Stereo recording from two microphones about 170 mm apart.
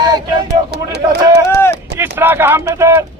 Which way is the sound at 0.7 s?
75° right (ahead or behind).